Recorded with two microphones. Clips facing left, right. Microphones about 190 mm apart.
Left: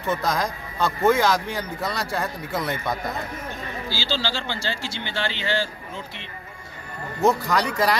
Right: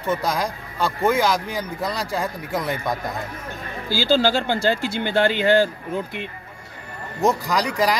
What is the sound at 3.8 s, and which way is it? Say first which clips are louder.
Speech: right 10 dB; 50° right (ahead or behind).